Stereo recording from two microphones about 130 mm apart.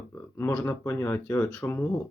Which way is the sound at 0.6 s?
15° left (ahead or behind).